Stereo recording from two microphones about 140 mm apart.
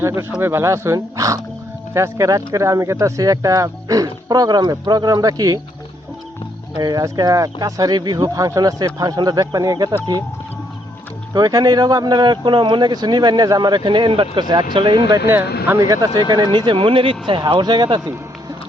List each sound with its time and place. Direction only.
0.0 s speech: 20° right (ahead or behind)
6.7 s speech: 30° right (ahead or behind)
11.3 s speech: 30° right (ahead or behind)
15.6 s speech: 20° right (ahead or behind)